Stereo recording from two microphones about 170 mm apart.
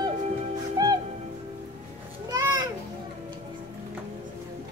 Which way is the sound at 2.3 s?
20° right (ahead or behind).